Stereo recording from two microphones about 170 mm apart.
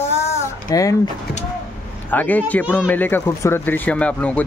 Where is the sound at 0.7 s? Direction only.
20° left (ahead or behind).